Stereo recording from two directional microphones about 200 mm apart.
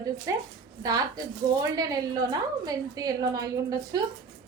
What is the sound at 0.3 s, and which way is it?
A woman's voice, 15° right (ahead or behind).